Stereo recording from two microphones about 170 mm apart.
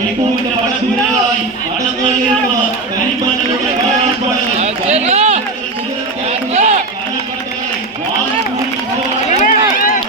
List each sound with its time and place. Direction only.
4.6 s run: 40° right (ahead or behind)
6.5 s run: 40° right (ahead or behind)
9.3 s run: 50° left (ahead or behind)